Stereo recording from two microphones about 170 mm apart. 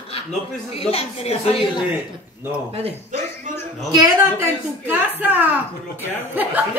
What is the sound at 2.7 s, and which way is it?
Speech, 35° right (ahead or behind).